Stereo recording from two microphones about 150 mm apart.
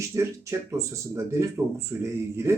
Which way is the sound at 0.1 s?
20° right (ahead or behind).